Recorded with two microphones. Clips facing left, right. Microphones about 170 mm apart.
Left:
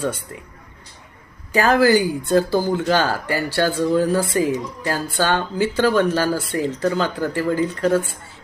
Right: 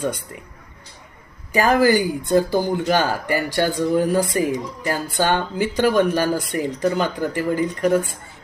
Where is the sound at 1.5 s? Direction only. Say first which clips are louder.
Left 1 dB; 15° right (ahead or behind).